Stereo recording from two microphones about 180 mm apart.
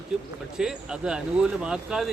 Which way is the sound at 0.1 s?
Centre (ahead or behind).